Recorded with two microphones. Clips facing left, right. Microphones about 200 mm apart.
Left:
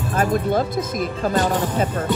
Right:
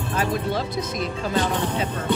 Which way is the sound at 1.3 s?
45° left (ahead or behind).